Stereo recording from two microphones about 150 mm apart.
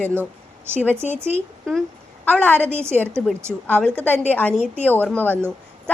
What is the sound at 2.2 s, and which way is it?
Speech, 10° left (ahead or behind).